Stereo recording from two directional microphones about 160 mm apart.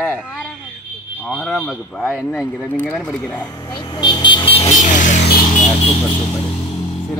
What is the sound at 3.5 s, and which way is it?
Vehicle, 25° left (ahead or behind).